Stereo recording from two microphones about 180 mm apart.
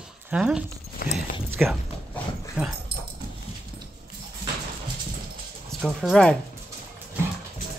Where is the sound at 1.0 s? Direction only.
55° left (ahead or behind).